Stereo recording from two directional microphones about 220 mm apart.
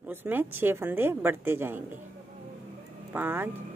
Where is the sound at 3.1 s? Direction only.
10° right (ahead or behind).